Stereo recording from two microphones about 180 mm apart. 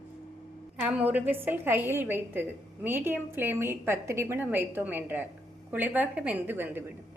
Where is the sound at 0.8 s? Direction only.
10° right (ahead or behind).